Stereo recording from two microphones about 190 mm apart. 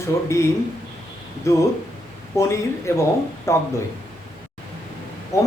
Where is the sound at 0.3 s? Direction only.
15° left (ahead or behind).